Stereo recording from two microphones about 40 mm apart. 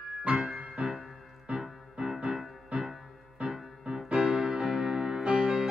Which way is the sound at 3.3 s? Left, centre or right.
Centre.